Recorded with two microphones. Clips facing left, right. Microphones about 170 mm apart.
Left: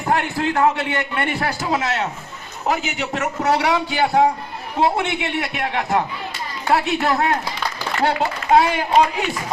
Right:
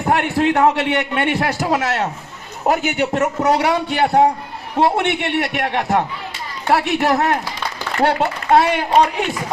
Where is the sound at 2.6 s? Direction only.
50° right (ahead or behind).